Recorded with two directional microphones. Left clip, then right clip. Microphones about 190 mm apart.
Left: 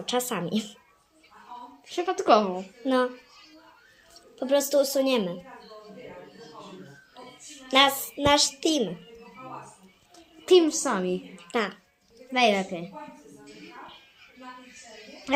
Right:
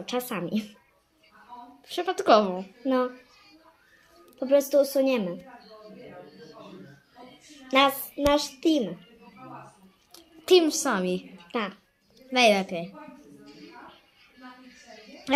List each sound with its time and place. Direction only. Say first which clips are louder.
0.0 s a woman's voice: left 3 dB; 20° left (ahead or behind)
1.9 s a woman's voice: even; 30° right (ahead or behind)
2.8 s a woman's voice: left 1 dB; 20° left (ahead or behind)
4.4 s a woman's voice: right 2 dB; 20° left (ahead or behind)
7.7 s a woman's voice: left 1 dB; 20° left (ahead or behind)
10.4 s a woman's voice: even; 30° right (ahead or behind)
11.5 s a woman's voice: left 3 dB; 20° left (ahead or behind)
12.3 s a woman's voice: right 2 dB; 30° right (ahead or behind)